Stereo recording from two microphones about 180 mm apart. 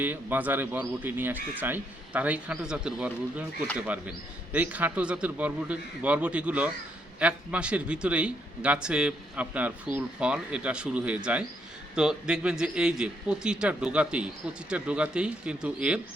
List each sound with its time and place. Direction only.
0.0 s a man's voice: 10° right (ahead or behind)